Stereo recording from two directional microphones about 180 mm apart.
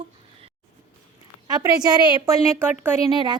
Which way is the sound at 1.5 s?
20° right (ahead or behind).